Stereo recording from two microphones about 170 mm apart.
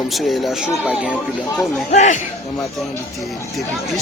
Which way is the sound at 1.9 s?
45° left (ahead or behind).